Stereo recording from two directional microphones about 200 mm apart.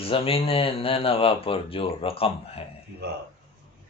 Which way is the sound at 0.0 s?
30° left (ahead or behind).